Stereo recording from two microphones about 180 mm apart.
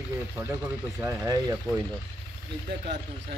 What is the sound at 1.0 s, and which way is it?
Speech, 10° right (ahead or behind).